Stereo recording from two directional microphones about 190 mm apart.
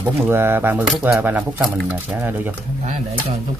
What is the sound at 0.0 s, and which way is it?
Speech, 10° right (ahead or behind).